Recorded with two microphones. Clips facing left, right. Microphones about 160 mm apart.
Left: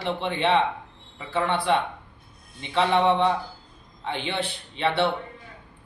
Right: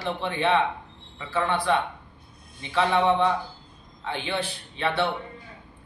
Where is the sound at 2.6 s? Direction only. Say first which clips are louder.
Left 1 dB; 25° left (ahead or behind).